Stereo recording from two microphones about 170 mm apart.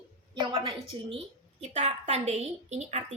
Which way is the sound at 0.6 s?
30° right (ahead or behind).